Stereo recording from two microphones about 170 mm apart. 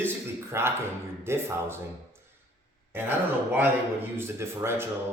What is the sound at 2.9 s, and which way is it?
Speech, 10° right (ahead or behind).